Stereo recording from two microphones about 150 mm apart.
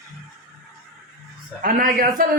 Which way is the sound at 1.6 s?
65° right (ahead or behind).